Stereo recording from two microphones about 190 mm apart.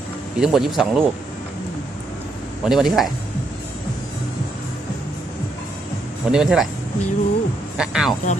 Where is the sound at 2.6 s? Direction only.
Centre (ahead or behind).